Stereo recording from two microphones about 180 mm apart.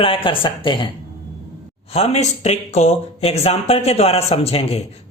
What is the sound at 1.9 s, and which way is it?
Speech, 35° left (ahead or behind).